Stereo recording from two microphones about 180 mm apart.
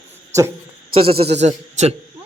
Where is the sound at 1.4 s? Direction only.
40° right (ahead or behind).